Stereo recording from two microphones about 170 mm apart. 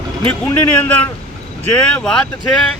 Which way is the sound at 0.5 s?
10° left (ahead or behind).